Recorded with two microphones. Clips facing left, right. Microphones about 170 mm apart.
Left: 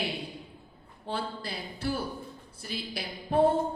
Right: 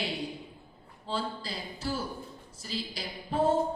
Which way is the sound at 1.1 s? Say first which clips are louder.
Even; 60° left (ahead or behind).